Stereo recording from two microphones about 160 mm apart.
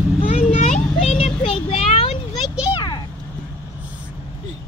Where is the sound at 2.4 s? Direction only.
5° right (ahead or behind).